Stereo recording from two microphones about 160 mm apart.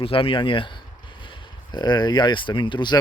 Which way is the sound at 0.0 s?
35° left (ahead or behind).